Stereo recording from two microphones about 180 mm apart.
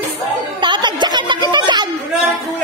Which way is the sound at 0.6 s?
25° right (ahead or behind).